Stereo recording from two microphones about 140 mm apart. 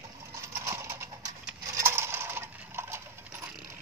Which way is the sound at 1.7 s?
20° right (ahead or behind).